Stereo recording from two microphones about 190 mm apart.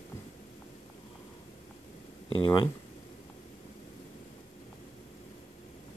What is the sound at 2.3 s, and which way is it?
Speech, 25° left (ahead or behind).